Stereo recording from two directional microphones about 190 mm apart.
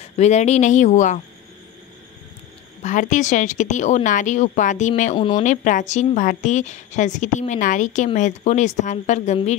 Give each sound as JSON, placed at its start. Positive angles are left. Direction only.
{"t": 0.0, "sound": "a woman's voice", "side_deg": 35}
{"t": 2.8, "sound": "a woman's voice", "side_deg": 40}
{"t": 5.1, "sound": "speech", "side_deg": 25}
{"t": 5.4, "sound": "a woman's voice", "side_deg": 40}